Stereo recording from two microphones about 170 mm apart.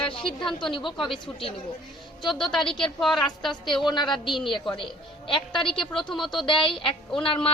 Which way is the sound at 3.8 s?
25° left (ahead or behind).